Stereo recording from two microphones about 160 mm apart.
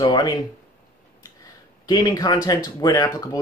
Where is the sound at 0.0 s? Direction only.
25° left (ahead or behind).